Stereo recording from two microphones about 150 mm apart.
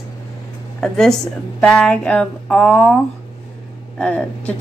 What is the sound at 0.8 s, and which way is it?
A woman's voice, 5° left (ahead or behind).